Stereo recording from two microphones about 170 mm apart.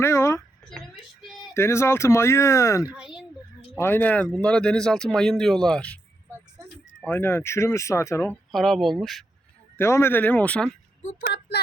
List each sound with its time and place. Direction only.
0.0 s a sound: 15° left (ahead or behind)
1.5 s speech: 15° left (ahead or behind)
2.9 s speech: 5° right (ahead or behind)
3.8 s speech: 10° left (ahead or behind)
6.6 s a sound: 15° right (ahead or behind)
7.0 s speech: 10° left (ahead or behind)
8.5 s speech: centre (ahead or behind)
9.7 s speech: 15° left (ahead or behind)
11.0 s speech: 45° left (ahead or behind)